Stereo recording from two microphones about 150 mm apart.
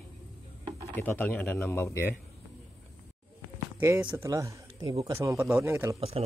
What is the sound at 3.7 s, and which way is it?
Speech, 20° right (ahead or behind).